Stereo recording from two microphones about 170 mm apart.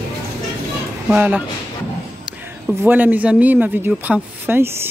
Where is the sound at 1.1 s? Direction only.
10° right (ahead or behind).